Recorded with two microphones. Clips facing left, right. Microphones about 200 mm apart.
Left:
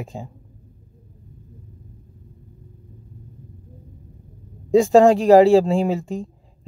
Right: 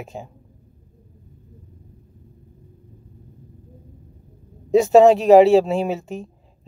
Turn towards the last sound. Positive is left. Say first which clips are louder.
# left 2 dB
turn(degrees=-20)  # may be behind; listen again after turning